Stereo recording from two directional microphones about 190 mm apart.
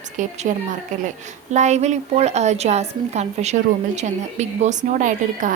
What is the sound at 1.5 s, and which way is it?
A woman's voice, 35° right (ahead or behind).